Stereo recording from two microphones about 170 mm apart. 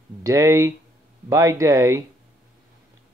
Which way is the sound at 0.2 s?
20° right (ahead or behind).